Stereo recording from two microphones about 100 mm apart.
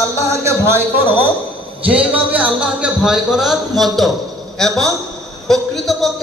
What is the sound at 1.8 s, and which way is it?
A man's voice, 15° right (ahead or behind).